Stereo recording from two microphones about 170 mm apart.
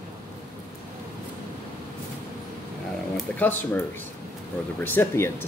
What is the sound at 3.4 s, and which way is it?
Speech, 10° left (ahead or behind).